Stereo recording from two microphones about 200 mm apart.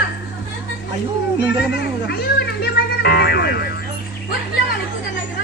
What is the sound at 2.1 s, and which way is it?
Music, 50° left (ahead or behind).